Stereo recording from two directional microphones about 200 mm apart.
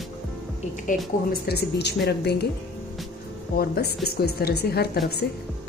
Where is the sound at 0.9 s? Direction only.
40° left (ahead or behind).